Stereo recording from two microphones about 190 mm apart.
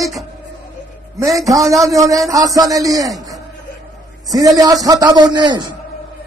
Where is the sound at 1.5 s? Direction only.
15° right (ahead or behind).